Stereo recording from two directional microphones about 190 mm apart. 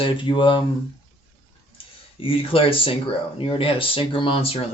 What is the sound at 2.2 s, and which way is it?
Speech, 30° left (ahead or behind).